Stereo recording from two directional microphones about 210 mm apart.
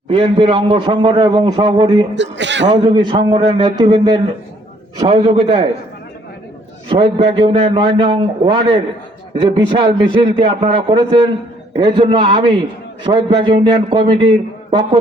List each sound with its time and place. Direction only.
0.1 s a man's voice: 25° right (ahead or behind)
2.1 s a man's voice: 60° right (ahead or behind)
2.7 s a man's voice: 25° right (ahead or behind)
6.8 s a man's voice: 25° right (ahead or behind)